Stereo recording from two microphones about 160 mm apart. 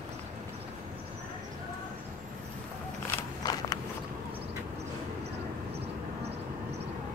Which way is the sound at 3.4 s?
25° left (ahead or behind).